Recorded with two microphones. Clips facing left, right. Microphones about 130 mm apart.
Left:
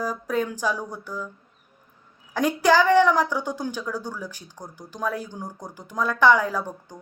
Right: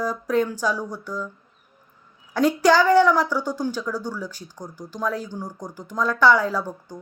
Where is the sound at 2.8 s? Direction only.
35° right (ahead or behind).